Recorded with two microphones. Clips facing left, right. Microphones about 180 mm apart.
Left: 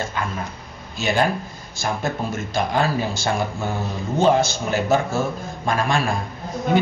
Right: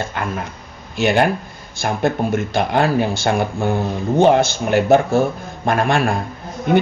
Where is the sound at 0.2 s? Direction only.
60° right (ahead or behind).